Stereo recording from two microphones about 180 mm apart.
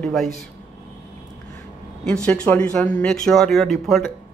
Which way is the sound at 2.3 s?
5° left (ahead or behind).